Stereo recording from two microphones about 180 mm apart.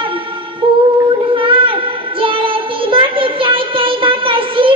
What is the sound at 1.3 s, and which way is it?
Child singing, 30° right (ahead or behind).